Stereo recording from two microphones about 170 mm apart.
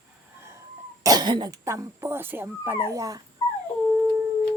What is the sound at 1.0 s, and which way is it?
Speech, 25° right (ahead or behind).